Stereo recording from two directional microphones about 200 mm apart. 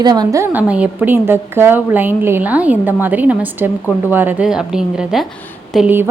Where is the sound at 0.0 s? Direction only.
20° right (ahead or behind).